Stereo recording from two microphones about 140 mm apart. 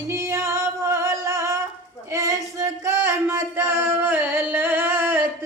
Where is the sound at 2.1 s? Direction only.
20° right (ahead or behind).